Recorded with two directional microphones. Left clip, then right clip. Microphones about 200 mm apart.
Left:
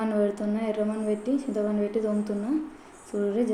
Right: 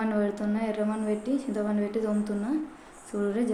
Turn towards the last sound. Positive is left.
turn(degrees=-5)  # may be behind; listen again after turning